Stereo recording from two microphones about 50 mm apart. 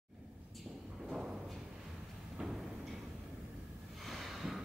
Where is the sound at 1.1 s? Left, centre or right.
Centre.